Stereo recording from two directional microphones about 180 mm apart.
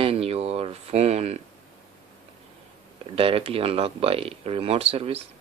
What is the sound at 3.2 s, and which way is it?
Speech, 30° right (ahead or behind).